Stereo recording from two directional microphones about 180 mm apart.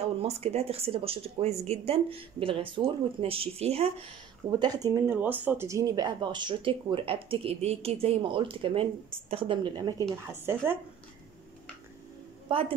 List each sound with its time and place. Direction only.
0.2 s speech: 35° right (ahead or behind)
4.5 s speech: 20° right (ahead or behind)
12.4 s a woman's voice: 30° right (ahead or behind)